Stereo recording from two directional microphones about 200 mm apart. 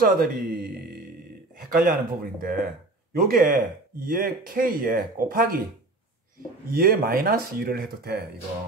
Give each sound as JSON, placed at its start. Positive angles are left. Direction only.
{"t": 0.0, "sound": "speech", "side_deg": -45}
{"t": 6.7, "sound": "speech", "side_deg": -45}